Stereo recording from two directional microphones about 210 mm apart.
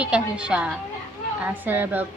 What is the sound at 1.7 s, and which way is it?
Speech, 10° right (ahead or behind).